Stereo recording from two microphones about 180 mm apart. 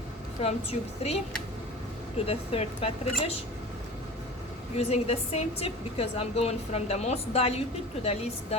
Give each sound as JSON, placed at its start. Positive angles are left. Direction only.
{"t": 0.4, "sound": "a woman's voice", "side_deg": 35}
{"t": 2.1, "sound": "a woman's voice", "side_deg": 35}
{"t": 4.8, "sound": "a woman's voice", "side_deg": 35}